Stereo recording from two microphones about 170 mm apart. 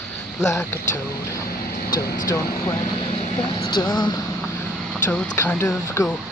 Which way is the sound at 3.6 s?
25° left (ahead or behind).